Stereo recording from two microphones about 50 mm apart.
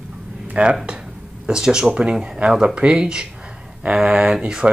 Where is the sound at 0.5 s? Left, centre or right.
Right.